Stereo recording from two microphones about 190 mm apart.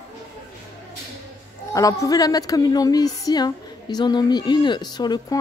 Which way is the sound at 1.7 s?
15° left (ahead or behind).